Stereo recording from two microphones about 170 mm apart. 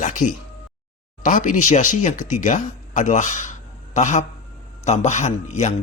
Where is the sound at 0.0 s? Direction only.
45° left (ahead or behind).